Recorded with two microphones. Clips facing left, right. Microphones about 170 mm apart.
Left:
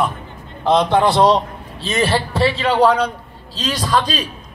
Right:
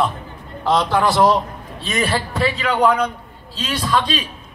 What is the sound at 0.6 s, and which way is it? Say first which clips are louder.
A man's voice: left 3 dB; 20° left (ahead or behind).